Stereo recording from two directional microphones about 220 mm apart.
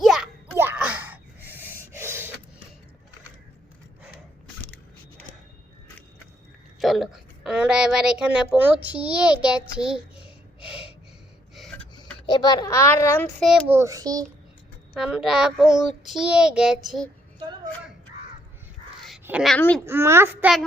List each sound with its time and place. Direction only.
0.0 s a sound: centre (ahead or behind)
2.0 s gasp: 10° right (ahead or behind)
6.7 s a woman's voice: centre (ahead or behind)
11.5 s gasp: centre (ahead or behind)
12.2 s a child's voice: 20° left (ahead or behind)
13.4 s a child's voice: centre (ahead or behind)
13.7 s a child's voice: 15° right (ahead or behind)
14.9 s a child's voice: centre (ahead or behind)
19.2 s a child's voice: 5° right (ahead or behind)
19.8 s a child's voice: 10° right (ahead or behind)